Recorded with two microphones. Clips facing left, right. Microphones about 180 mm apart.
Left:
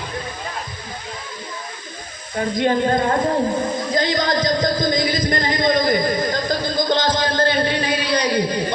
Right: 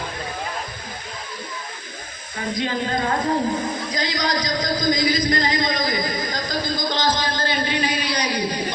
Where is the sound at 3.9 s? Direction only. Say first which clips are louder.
Left 6 dB; 50° left (ahead or behind).